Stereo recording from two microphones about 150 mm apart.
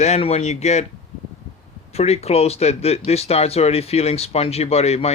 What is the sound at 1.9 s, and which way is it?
Speech, 45° left (ahead or behind).